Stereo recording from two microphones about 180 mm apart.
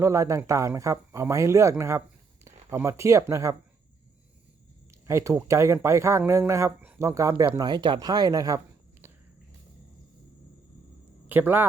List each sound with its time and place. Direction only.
0.0 s speech: 15° right (ahead or behind)
4.9 s speech: 15° right (ahead or behind)
11.3 s speech: 10° right (ahead or behind)